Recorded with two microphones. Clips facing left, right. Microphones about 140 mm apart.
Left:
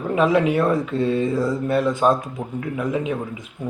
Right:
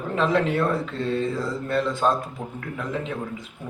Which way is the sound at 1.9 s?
20° left (ahead or behind).